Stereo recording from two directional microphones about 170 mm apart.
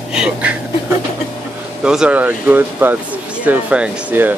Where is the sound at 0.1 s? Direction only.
5° right (ahead or behind).